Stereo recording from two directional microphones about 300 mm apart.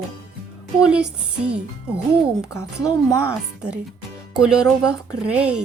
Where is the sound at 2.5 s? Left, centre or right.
Centre.